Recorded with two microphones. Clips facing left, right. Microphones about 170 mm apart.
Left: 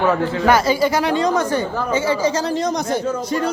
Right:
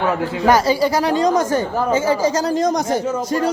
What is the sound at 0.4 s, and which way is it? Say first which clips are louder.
Speech: right 1 dB; 35° right (ahead or behind).